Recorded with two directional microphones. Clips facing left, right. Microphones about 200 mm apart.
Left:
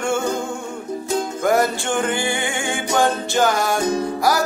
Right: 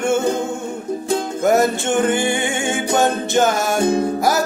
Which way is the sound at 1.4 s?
25° right (ahead or behind).